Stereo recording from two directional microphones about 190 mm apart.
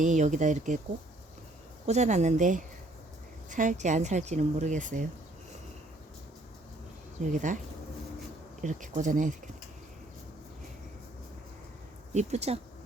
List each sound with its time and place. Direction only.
0.0 s speech: 40° right (ahead or behind)
1.9 s speech: 35° right (ahead or behind)
7.3 s speech: 45° right (ahead or behind)
8.6 s speech: 40° right (ahead or behind)
12.1 s speech: 35° right (ahead or behind)